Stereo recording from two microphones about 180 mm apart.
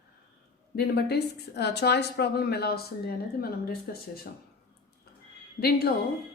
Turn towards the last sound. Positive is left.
turn(degrees=60)  # may be behind; listen again after turning